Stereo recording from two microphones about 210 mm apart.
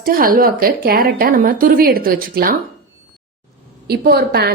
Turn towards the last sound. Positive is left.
turn(degrees=-50)  # may be behind; listen again after turning